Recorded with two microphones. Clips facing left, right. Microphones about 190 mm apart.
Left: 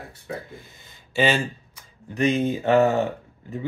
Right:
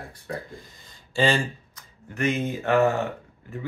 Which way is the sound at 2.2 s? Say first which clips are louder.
Left 4 dB; 25° left (ahead or behind).